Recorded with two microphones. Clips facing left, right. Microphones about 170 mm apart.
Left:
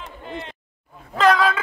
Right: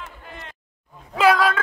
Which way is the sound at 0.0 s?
20° left (ahead or behind).